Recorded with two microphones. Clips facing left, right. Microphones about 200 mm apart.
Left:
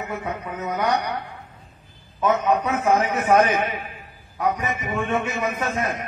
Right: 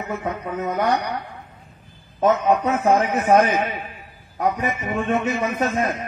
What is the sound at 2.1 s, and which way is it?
A man's voice, 45° right (ahead or behind).